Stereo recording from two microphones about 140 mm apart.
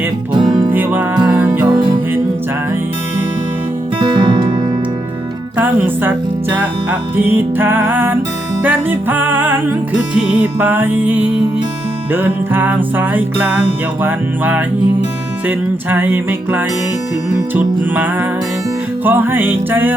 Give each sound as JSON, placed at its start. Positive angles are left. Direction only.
{"t": 0.3, "sound": "music", "side_deg": -35}
{"t": 0.7, "sound": "music", "side_deg": -15}
{"t": 4.0, "sound": "music", "side_deg": -30}
{"t": 5.5, "sound": "music", "side_deg": -15}
{"t": 7.2, "sound": "music", "side_deg": -15}
{"t": 19.0, "sound": "music", "side_deg": -15}